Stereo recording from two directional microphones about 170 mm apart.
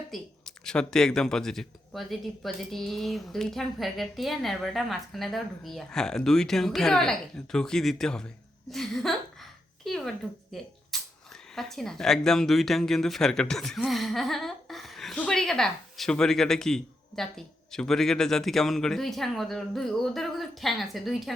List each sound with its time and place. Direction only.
0.1 s speech: 5° left (ahead or behind)
8.7 s a sound: centre (ahead or behind)
11.5 s speech: centre (ahead or behind)